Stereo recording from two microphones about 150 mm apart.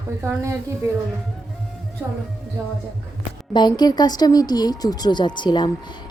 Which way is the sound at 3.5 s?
30° left (ahead or behind).